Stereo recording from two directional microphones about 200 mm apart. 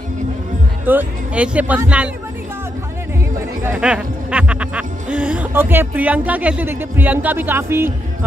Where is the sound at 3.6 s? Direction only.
5° right (ahead or behind).